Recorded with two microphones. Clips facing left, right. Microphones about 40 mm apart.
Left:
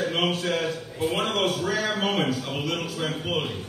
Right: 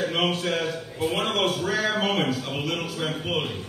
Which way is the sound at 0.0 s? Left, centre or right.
Centre.